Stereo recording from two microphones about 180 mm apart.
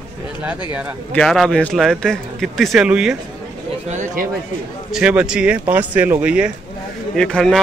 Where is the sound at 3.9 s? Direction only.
45° right (ahead or behind).